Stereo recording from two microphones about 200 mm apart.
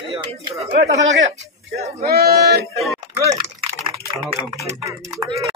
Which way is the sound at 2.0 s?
50° right (ahead or behind).